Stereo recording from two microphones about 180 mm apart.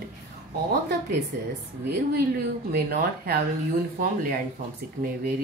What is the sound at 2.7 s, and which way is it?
Speech, 55° right (ahead or behind).